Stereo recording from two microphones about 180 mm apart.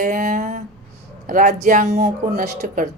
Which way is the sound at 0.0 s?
45° right (ahead or behind).